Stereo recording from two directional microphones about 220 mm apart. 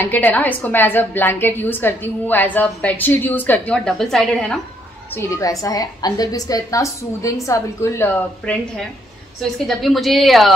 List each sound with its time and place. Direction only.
0.0 s a woman's voice: 10° left (ahead or behind)
5.1 s a woman's voice: 15° left (ahead or behind)